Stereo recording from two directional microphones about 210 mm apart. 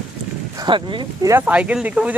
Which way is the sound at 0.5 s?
20° right (ahead or behind).